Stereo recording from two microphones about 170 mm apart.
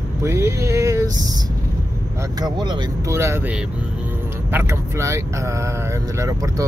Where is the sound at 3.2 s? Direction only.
15° right (ahead or behind).